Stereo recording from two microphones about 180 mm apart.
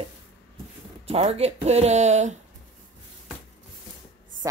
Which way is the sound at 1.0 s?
35° right (ahead or behind).